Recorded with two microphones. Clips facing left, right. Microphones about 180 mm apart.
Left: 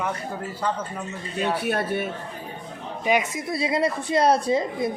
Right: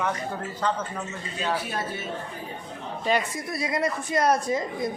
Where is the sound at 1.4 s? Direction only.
60° left (ahead or behind).